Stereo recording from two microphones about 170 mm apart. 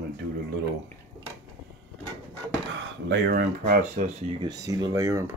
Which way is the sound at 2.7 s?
75° right (ahead or behind).